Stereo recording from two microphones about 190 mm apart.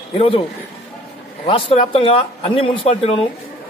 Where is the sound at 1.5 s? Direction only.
30° left (ahead or behind).